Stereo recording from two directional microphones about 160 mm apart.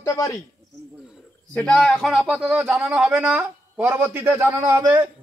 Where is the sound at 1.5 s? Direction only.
5° left (ahead or behind).